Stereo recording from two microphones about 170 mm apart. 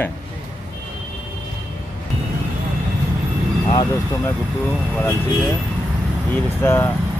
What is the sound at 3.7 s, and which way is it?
Speech, 20° left (ahead or behind).